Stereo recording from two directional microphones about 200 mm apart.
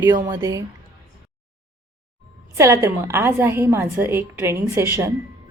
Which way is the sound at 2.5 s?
15° right (ahead or behind).